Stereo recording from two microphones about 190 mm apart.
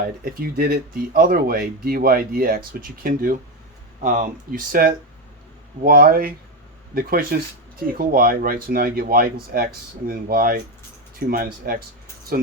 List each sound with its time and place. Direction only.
0.3 s speech: 50° right (ahead or behind)